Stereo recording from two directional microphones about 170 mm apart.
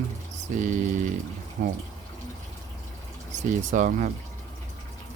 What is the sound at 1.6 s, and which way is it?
Speech, 60° right (ahead or behind).